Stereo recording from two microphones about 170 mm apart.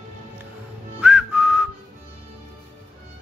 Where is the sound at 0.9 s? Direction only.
5° right (ahead or behind).